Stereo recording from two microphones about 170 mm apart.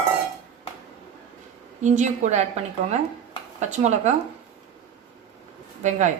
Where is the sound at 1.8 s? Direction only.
45° right (ahead or behind).